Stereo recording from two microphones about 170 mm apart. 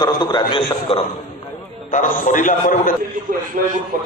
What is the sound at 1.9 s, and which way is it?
A man's voice, 50° left (ahead or behind).